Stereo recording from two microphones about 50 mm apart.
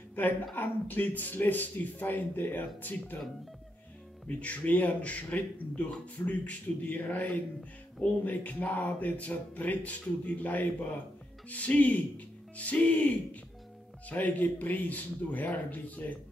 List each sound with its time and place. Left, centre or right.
0.6 s speech: left
4.3 s speech: left